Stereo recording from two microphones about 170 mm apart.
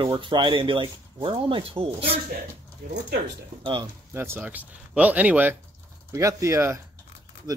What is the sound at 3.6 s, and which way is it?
Speech, 30° right (ahead or behind).